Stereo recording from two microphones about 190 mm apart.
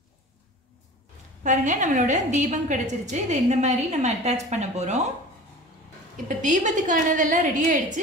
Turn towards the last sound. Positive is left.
turn(degrees=-40)  # may be behind; listen again after turning